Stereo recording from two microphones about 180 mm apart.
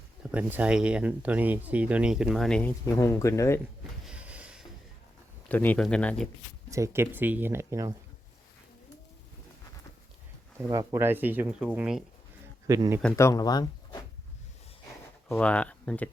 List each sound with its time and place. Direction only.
0.2 s speech: 5° right (ahead or behind)
2.8 s speech: 20° left (ahead or behind)
4.0 s a sound: 5° right (ahead or behind)
5.5 s speech: 10° left (ahead or behind)
6.7 s speech: 15° right (ahead or behind)
10.7 s speech: 15° right (ahead or behind)
12.6 s speech: 20° right (ahead or behind)
13.1 s speech: 15° left (ahead or behind)
15.3 s speech: 5° left (ahead or behind)